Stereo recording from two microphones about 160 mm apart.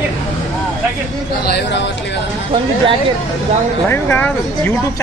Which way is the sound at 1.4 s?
90° left.